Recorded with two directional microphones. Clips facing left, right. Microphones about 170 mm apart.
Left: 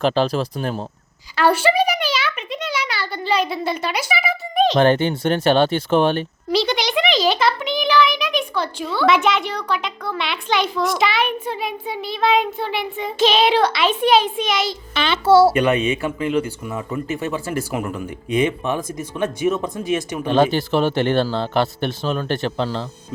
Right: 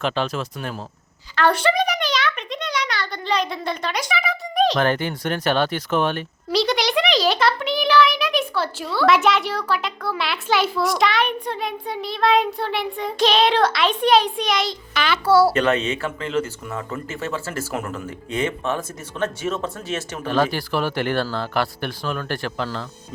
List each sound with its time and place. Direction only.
0.0 s speech: 35° left (ahead or behind)
1.4 s a sound: 5° left (ahead or behind)
4.8 s speech: 25° left (ahead or behind)
6.5 s a child's voice: centre (ahead or behind)
14.9 s speech: 25° left (ahead or behind)
15.5 s speech: 15° left (ahead or behind)